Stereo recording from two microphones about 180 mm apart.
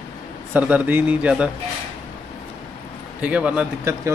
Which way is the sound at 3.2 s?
5° right (ahead or behind).